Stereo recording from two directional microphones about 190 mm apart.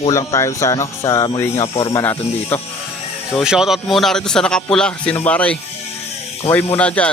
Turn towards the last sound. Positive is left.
turn(degrees=5)  # may be behind; listen again after turning